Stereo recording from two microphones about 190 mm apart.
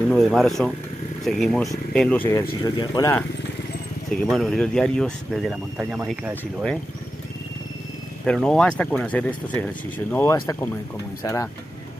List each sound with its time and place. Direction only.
0.1 s speech: centre (ahead or behind)
2.6 s speech: 25° left (ahead or behind)
4.1 s speech: centre (ahead or behind)
8.3 s speech: 5° left (ahead or behind)